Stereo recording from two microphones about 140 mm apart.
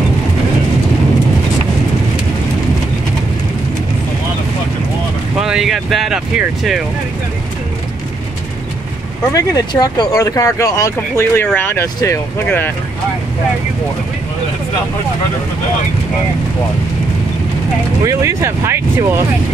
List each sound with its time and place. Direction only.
5.4 s speech: 5° right (ahead or behind)
9.3 s speech: 25° left (ahead or behind)
18.0 s speech: 20° right (ahead or behind)